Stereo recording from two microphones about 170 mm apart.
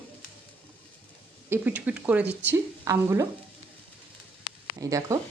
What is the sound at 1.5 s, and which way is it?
Speech, 10° right (ahead or behind).